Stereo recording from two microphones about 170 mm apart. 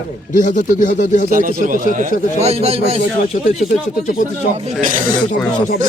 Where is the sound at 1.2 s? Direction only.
50° right (ahead or behind).